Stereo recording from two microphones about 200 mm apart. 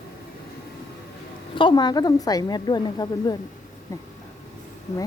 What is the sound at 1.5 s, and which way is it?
A woman's voice, 20° left (ahead or behind).